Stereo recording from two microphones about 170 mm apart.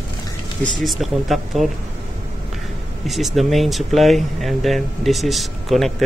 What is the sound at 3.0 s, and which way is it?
Speech, centre (ahead or behind).